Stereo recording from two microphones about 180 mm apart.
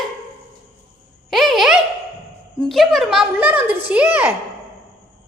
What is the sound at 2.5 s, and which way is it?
A woman's voice, centre (ahead or behind).